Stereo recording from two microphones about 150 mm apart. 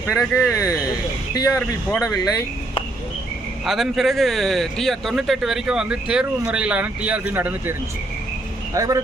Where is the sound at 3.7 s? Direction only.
Centre (ahead or behind).